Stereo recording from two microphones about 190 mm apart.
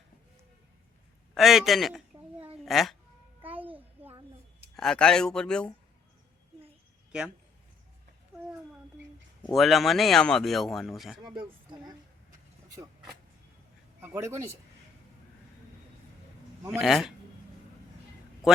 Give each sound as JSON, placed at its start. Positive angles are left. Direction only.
{"t": 1.3, "sound": "a woman's voice", "side_deg": 0}
{"t": 3.4, "sound": "a sound", "side_deg": -10}
{"t": 4.8, "sound": "speech", "side_deg": 5}
{"t": 9.6, "sound": "speech", "side_deg": 0}
{"t": 11.3, "sound": "speech", "side_deg": -25}
{"t": 14.0, "sound": "speech", "side_deg": -15}
{"t": 16.7, "sound": "speech", "side_deg": 0}